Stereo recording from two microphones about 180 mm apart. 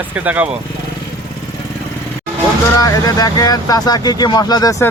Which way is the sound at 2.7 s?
20° left (ahead or behind).